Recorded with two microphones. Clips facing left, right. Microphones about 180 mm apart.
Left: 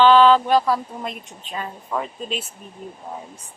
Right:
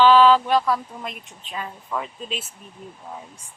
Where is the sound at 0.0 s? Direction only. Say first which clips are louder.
Left 1 dB; 5° right (ahead or behind).